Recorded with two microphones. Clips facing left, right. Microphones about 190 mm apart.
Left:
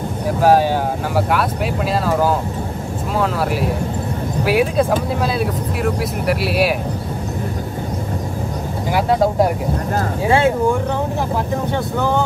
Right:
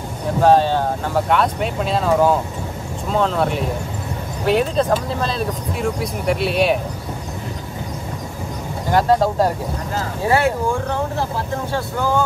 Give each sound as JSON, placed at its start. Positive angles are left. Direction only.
{"t": 0.4, "sound": "speech", "side_deg": 10}
{"t": 8.9, "sound": "speech", "side_deg": 10}